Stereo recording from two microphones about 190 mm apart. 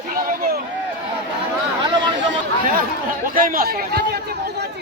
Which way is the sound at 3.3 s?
50° right (ahead or behind).